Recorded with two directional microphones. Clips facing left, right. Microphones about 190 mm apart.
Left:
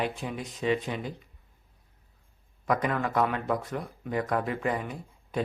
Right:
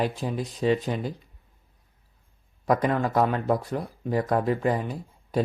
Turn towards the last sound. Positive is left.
turn(degrees=-35)  # may be behind; listen again after turning